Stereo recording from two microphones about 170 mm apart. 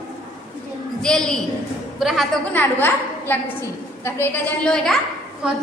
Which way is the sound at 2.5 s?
10° left (ahead or behind).